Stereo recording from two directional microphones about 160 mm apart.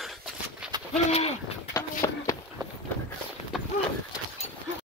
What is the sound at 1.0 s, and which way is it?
Bird, 40° left (ahead or behind).